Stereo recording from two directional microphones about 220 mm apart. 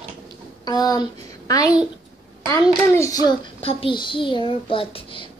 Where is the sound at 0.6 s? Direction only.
15° left (ahead or behind).